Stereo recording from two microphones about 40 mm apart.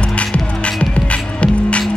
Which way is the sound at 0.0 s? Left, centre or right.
Left.